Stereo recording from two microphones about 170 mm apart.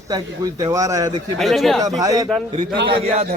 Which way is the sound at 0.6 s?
20° right (ahead or behind).